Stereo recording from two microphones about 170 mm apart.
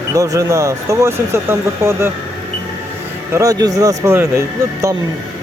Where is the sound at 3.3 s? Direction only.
20° right (ahead or behind).